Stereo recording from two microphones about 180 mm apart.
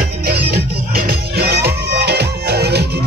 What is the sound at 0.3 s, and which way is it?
Music, 60° right (ahead or behind).